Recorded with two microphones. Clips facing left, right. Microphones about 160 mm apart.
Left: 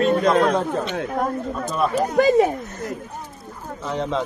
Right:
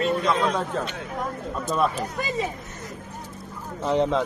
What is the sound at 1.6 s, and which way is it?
Speech, 50° left (ahead or behind).